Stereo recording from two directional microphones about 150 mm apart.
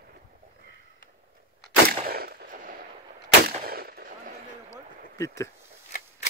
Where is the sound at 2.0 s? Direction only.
90° right; by 2.7 s 65° right (ahead or behind).